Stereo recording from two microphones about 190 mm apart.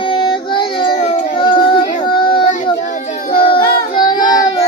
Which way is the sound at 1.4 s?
25° left (ahead or behind).